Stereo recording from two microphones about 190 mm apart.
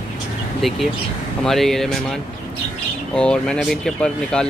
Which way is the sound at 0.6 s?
Centre (ahead or behind).